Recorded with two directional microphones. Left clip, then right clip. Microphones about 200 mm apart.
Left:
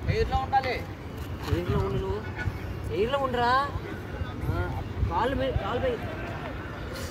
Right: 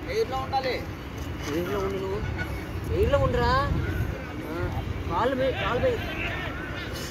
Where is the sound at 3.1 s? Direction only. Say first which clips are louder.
Right 1 dB; 10° left (ahead or behind).